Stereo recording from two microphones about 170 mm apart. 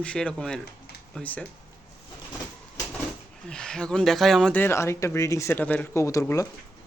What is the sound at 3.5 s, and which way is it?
Speech, 5° left (ahead or behind).